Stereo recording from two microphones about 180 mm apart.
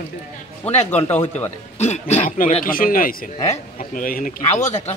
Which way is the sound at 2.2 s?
50° left (ahead or behind).